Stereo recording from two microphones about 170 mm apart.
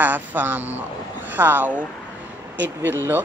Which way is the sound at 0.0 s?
10° right (ahead or behind).